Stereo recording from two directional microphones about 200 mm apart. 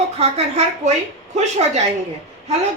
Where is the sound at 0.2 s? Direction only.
30° right (ahead or behind).